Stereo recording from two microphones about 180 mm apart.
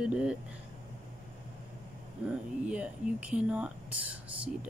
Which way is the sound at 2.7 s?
5° right (ahead or behind).